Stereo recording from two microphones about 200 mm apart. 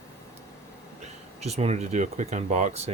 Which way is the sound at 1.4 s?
30° right (ahead or behind).